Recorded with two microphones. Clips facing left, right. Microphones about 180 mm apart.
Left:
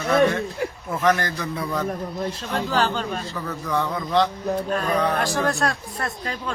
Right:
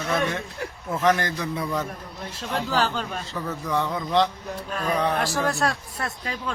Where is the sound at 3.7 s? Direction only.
20° right (ahead or behind).